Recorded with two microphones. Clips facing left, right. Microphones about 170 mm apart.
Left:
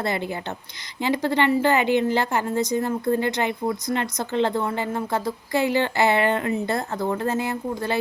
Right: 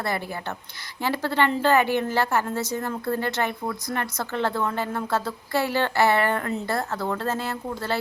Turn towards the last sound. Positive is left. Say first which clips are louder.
# left 3 dB
turn(degrees=15)  # may be behind; listen again after turning